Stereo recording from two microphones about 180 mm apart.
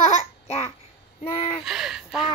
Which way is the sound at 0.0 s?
40° left (ahead or behind).